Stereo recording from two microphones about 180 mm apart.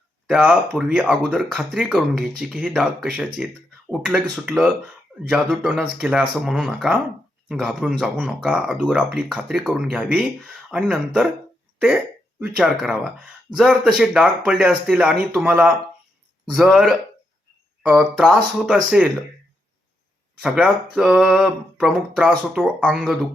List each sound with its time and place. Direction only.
0.3 s speech: 5° right (ahead or behind)
20.9 s speech: 5° right (ahead or behind)